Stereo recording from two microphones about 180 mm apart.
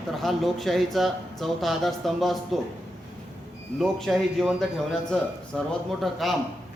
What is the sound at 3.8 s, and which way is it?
Speech, centre (ahead or behind).